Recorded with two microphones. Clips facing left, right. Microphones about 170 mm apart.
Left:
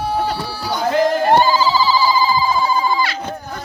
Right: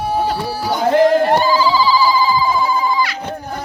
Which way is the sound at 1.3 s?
30° left (ahead or behind).